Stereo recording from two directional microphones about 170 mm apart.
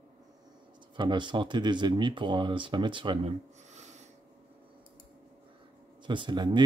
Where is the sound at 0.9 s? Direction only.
25° right (ahead or behind).